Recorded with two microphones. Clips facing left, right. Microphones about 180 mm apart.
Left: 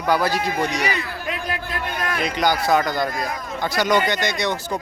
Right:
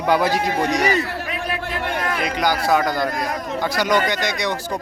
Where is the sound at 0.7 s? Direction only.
40° right (ahead or behind).